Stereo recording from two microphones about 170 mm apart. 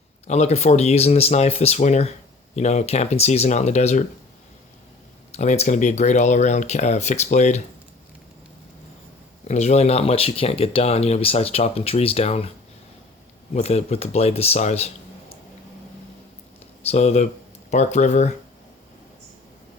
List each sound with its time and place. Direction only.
0.3 s speech: 40° left (ahead or behind)
5.3 s speech: 40° left (ahead or behind)
9.5 s speech: 40° left (ahead or behind)
13.5 s speech: 40° left (ahead or behind)
16.8 s speech: 40° left (ahead or behind)